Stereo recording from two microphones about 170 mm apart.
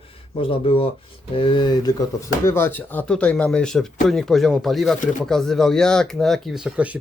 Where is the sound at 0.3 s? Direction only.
30° left (ahead or behind).